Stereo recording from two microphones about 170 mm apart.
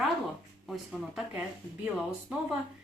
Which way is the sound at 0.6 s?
Centre (ahead or behind).